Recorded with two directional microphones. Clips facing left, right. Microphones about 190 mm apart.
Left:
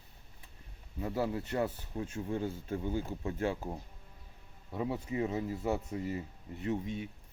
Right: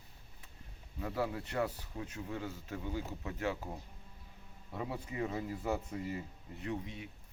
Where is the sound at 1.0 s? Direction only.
25° left (ahead or behind).